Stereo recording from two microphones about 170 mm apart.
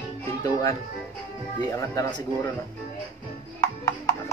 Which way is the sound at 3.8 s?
10° left (ahead or behind).